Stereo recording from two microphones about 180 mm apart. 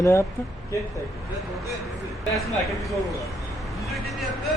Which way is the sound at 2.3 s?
Centre (ahead or behind).